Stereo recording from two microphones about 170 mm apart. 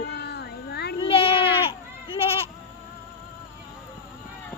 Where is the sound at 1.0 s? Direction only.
35° left (ahead or behind).